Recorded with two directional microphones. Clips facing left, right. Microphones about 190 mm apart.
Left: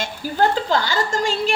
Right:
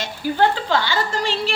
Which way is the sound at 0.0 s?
45° left (ahead or behind).